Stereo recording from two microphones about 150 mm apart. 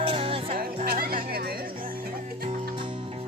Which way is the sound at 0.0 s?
40° right (ahead or behind).